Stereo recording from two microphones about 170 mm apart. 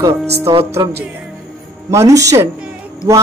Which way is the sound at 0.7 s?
15° right (ahead or behind).